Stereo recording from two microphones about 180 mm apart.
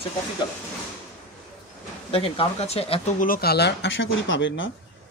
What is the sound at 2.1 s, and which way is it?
Speech, 30° left (ahead or behind).